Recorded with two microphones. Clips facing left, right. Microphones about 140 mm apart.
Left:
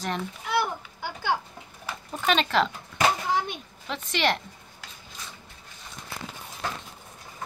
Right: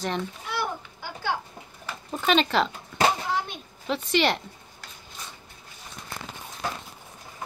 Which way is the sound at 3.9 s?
Centre (ahead or behind).